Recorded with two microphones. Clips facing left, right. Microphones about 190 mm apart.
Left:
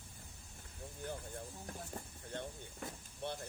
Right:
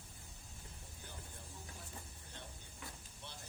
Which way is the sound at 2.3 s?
55° left (ahead or behind).